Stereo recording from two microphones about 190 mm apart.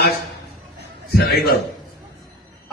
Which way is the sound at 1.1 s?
55° left (ahead or behind).